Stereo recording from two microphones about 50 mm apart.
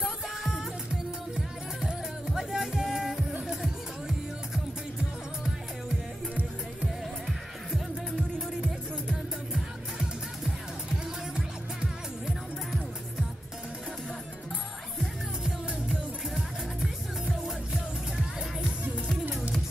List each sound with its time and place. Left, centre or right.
1.3 s music: centre
9.5 s music: centre
11.3 s music: centre
19.2 s music: right